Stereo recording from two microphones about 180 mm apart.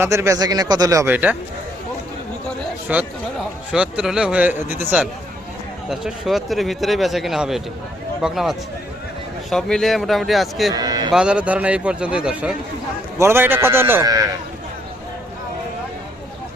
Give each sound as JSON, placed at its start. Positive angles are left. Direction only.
{"t": 0.0, "sound": "a man's voice", "side_deg": -15}
{"t": 2.9, "sound": "a man's voice", "side_deg": -5}
{"t": 10.7, "sound": "a sound", "side_deg": -20}
{"t": 11.1, "sound": "a man's voice", "side_deg": -5}